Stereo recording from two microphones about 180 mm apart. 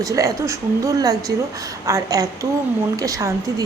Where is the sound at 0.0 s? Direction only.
20° right (ahead or behind).